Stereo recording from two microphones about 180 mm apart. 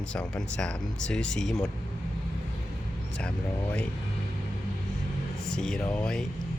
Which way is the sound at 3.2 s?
5° left (ahead or behind).